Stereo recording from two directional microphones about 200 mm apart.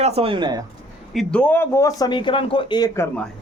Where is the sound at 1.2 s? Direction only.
5° left (ahead or behind).